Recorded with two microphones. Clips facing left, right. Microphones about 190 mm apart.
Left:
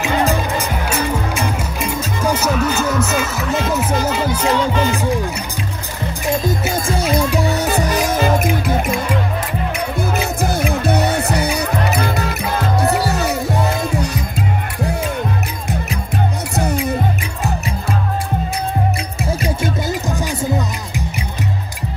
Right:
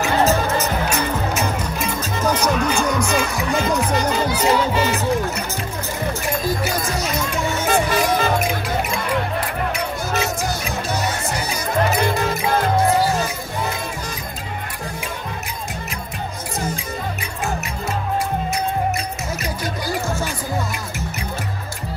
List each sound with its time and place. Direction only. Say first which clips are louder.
0.2 s music: even; 15° left (ahead or behind)
4.5 s music: left 1 dB; 5° right (ahead or behind)
6.4 s music: left 3 dB; 25° left (ahead or behind); by 8.5 s 45° left (ahead or behind)
10.2 s music: left 5 dB; 55° left (ahead or behind)
16.5 s music: left 6 dB; 70° left (ahead or behind)
19.4 s music: left 5 dB; 25° left (ahead or behind)